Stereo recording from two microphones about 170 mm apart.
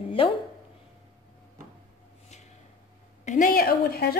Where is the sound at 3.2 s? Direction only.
50° left (ahead or behind); by 4.1 s 65° left (ahead or behind).